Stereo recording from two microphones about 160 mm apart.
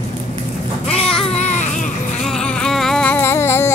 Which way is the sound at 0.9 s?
35° left (ahead or behind).